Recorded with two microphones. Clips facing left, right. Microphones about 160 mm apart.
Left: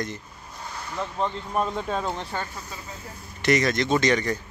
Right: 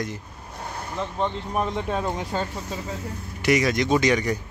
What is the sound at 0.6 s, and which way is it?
Vehicle, 55° right (ahead or behind).